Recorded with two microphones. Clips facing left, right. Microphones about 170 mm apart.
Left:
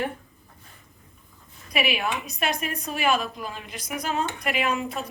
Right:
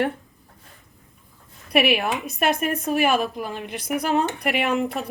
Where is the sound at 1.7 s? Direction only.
60° right (ahead or behind).